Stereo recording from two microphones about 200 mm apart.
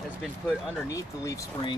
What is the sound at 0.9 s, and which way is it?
Speech, 15° left (ahead or behind).